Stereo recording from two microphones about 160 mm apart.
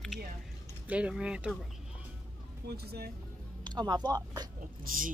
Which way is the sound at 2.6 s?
80° right.